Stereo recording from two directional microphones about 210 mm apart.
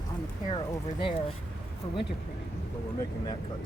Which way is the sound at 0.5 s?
25° left (ahead or behind).